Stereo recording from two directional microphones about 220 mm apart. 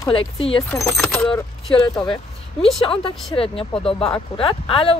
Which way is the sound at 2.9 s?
25° left (ahead or behind).